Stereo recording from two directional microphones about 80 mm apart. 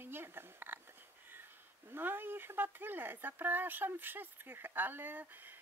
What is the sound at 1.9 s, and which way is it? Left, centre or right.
Speech, right.